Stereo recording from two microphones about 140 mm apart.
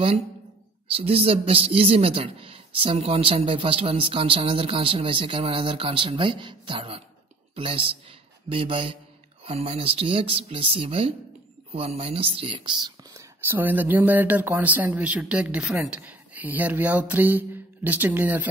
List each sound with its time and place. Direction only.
0.8 s speech: 45° right (ahead or behind)
13.1 s speech: 15° right (ahead or behind)